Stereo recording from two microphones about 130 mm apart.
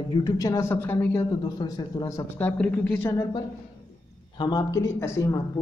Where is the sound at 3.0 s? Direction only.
30° left (ahead or behind).